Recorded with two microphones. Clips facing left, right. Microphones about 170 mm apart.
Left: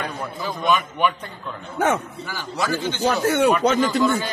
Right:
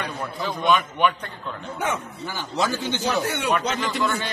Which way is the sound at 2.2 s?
20° right (ahead or behind).